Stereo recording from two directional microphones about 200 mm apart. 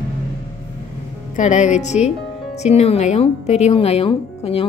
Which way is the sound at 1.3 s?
35° left (ahead or behind).